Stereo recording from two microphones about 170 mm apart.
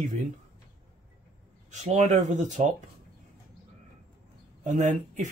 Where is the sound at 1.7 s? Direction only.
45° right (ahead or behind).